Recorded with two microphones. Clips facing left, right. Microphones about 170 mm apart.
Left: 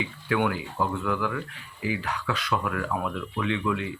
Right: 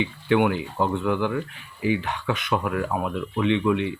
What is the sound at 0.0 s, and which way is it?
Speech, 20° right (ahead or behind).